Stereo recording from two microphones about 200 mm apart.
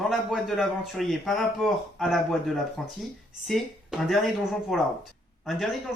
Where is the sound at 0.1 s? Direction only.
Centre (ahead or behind).